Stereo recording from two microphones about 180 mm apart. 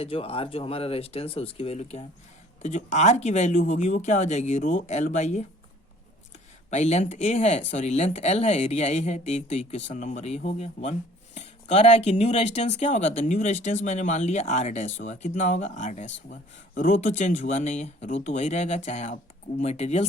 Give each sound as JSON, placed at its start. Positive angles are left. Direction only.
{"t": 0.0, "sound": "speech", "side_deg": 30}
{"t": 6.7, "sound": "speech", "side_deg": 40}